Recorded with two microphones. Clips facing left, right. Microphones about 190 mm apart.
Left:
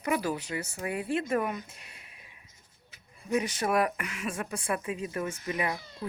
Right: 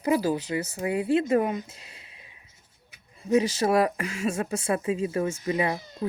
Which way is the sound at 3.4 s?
30° right (ahead or behind).